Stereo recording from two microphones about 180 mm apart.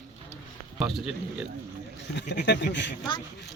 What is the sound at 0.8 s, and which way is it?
Speech, centre (ahead or behind).